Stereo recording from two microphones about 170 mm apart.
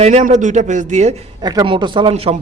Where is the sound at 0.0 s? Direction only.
40° right (ahead or behind).